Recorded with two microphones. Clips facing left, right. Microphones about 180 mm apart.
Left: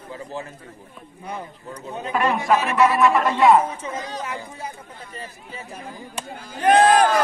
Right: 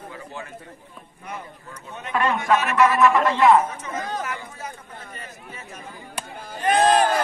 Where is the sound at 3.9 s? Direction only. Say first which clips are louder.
Right 2 dB; 50° right (ahead or behind).